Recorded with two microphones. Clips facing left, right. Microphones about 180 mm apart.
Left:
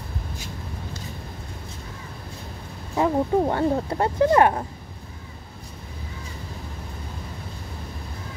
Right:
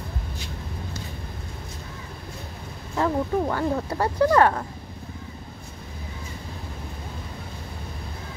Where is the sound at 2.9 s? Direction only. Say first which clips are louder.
Left 3 dB; 15° left (ahead or behind).